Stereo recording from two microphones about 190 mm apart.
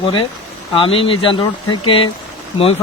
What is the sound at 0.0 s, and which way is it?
Speech, 25° left (ahead or behind).